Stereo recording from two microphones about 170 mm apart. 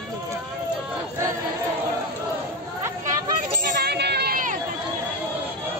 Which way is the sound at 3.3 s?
60° right (ahead or behind).